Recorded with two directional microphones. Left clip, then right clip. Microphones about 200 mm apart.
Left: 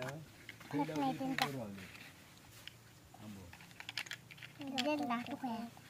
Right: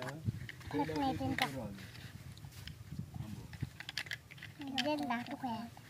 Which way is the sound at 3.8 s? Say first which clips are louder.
Right 2 dB; 5° right (ahead or behind).